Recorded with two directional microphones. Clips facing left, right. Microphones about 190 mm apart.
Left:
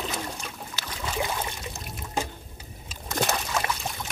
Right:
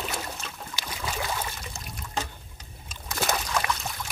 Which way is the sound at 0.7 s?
10° right (ahead or behind).